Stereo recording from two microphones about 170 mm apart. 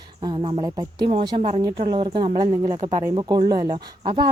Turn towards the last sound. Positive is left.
turn(degrees=-25)  # may be behind; listen again after turning